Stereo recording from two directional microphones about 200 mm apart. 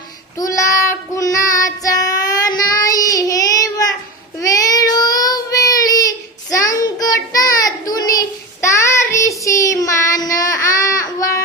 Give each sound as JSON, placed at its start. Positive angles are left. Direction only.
{"t": 0.3, "sound": "child singing", "side_deg": 15}
{"t": 10.8, "sound": "baby cry", "side_deg": 15}